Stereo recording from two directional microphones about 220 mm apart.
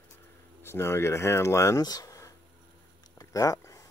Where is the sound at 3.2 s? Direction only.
15° left (ahead or behind).